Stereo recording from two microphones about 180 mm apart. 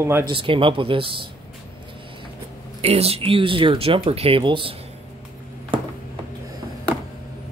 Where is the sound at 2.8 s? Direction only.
35° right (ahead or behind).